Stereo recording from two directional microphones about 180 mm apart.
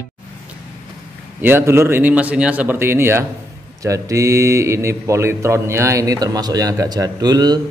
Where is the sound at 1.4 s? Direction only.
15° right (ahead or behind).